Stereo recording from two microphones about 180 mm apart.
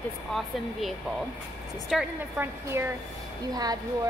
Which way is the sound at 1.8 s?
5° right (ahead or behind).